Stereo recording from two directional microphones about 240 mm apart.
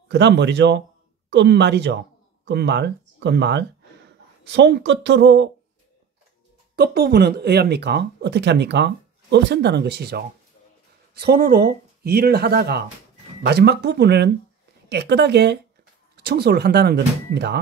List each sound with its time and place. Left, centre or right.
0.1 s speech: right
6.7 s speech: right